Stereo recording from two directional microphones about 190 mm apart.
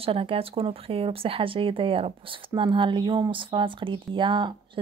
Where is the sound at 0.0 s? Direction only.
30° right (ahead or behind).